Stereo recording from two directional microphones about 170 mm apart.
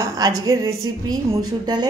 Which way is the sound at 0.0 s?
20° right (ahead or behind).